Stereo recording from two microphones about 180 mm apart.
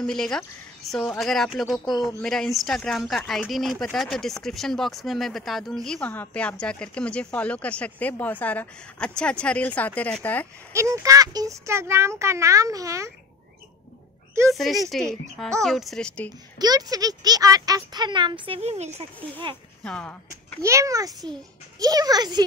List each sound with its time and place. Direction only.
0.0 s speech: 5° left (ahead or behind)
10.7 s speech: 15° right (ahead or behind)
14.5 s speech: centre (ahead or behind)
16.5 s speech: 20° right (ahead or behind); by 19.0 s 35° right (ahead or behind)
19.8 s speech: 5° left (ahead or behind)
20.6 s speech: 15° right (ahead or behind)